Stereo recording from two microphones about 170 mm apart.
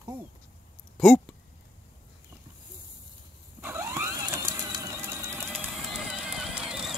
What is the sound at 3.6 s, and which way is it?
Printer, 15° right (ahead or behind).